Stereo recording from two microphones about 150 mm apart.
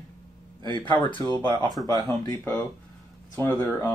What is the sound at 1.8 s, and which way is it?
Speech, 25° left (ahead or behind).